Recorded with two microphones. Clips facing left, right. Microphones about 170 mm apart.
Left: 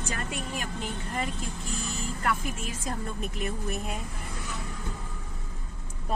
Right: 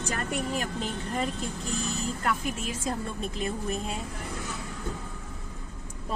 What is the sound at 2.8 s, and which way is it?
Speech, 30° right (ahead or behind).